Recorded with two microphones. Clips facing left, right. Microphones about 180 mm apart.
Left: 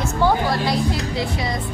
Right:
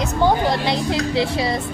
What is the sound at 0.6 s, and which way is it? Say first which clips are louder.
Speech: right 1 dB; 30° right (ahead or behind).